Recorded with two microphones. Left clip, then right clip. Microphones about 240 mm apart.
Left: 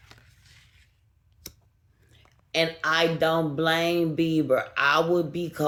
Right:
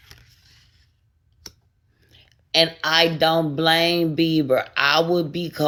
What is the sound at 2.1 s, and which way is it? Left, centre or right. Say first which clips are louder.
Speech: right 10 dB; right.